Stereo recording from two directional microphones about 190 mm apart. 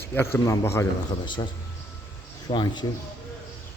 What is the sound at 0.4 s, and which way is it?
A man's voice, 15° left (ahead or behind).